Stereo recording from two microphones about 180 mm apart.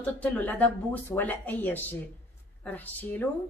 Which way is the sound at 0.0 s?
10° left (ahead or behind).